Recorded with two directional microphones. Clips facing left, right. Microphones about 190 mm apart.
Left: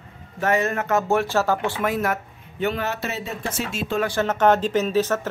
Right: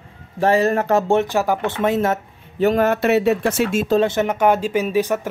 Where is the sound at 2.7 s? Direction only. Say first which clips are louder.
Right 12 dB; 50° right (ahead or behind); by 3.8 s 65° right (ahead or behind).